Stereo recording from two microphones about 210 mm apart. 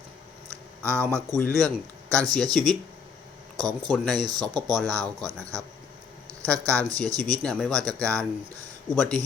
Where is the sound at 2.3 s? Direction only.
Centre (ahead or behind).